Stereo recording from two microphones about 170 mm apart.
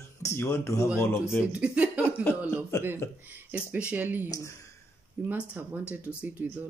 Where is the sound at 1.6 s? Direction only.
10° right (ahead or behind).